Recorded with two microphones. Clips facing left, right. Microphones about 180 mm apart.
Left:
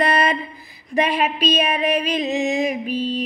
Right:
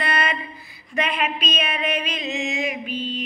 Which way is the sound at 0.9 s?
35° left (ahead or behind).